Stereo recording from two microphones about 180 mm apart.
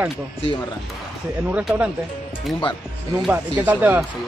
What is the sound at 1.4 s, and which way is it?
Speech, 5° right (ahead or behind).